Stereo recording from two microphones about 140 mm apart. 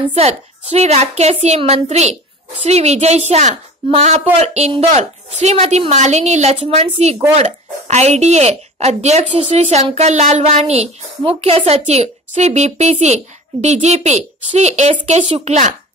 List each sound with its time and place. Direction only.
0.1 s speech: 45° right (ahead or behind)